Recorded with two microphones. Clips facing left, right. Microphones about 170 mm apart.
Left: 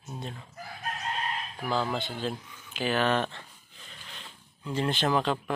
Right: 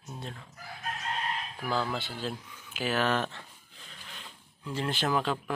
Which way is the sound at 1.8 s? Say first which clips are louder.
Left 3 dB; 5° right (ahead or behind).